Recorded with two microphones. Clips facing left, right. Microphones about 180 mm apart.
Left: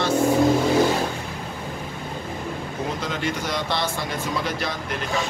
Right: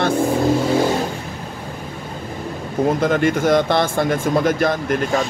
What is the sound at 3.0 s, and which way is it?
Speech, 50° right (ahead or behind).